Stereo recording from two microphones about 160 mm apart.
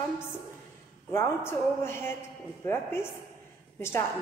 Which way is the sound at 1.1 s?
15° left (ahead or behind).